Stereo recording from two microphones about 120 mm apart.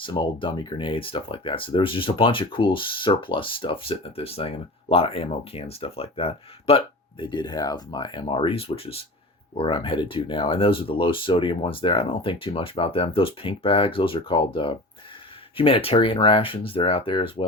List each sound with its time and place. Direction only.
0.0 s speech: 45° left (ahead or behind)